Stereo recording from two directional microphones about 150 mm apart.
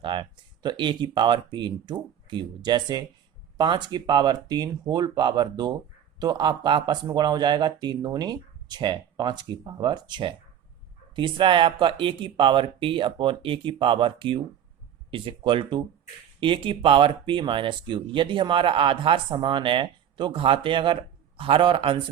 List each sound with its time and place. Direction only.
0.0 s speech: 35° right (ahead or behind)